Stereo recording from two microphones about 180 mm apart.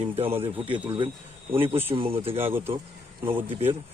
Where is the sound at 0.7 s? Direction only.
25° right (ahead or behind).